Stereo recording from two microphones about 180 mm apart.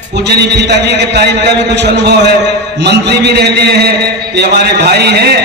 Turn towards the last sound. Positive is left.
turn(degrees=-65)  # may be behind; listen again after turning